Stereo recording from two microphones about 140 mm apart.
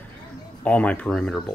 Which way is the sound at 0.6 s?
10° left (ahead or behind).